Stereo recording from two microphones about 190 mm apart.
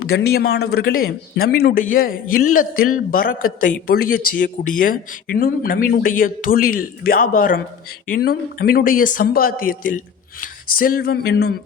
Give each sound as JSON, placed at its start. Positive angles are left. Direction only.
{"t": 0.2, "sound": "speech", "side_deg": 55}